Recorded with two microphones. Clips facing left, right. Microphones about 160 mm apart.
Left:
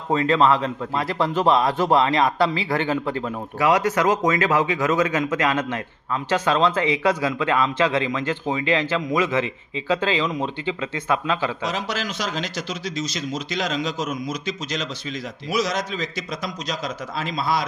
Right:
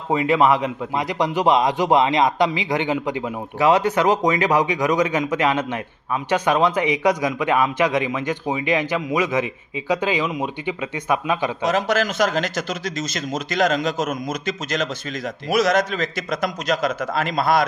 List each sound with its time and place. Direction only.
0.1 s a man's voice: 10° right (ahead or behind)
11.6 s speech: 50° right (ahead or behind)